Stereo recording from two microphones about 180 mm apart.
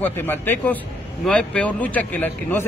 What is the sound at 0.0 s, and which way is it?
A man's voice, 10° left (ahead or behind).